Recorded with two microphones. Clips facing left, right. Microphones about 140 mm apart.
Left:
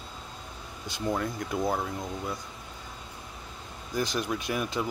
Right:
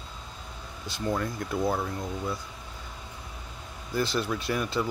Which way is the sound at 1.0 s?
5° left (ahead or behind).